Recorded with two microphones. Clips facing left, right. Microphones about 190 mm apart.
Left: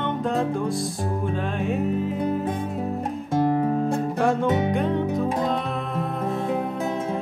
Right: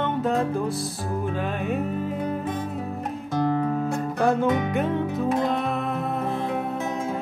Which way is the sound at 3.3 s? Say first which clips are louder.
Left 2 dB; 30° left (ahead or behind).